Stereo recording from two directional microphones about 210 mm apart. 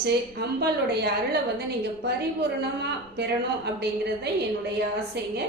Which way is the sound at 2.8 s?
50° right (ahead or behind).